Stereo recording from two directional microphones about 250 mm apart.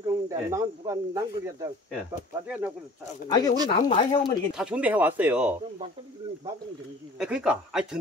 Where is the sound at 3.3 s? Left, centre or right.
Centre.